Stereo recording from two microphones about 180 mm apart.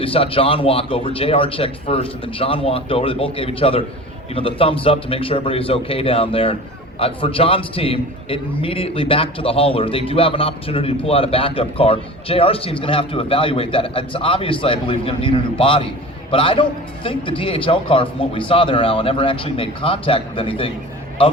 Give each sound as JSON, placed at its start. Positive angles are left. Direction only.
{"t": 0.0, "sound": "a man's voice", "side_deg": 30}